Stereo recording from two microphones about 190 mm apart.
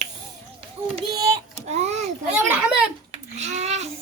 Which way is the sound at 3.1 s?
35° right (ahead or behind).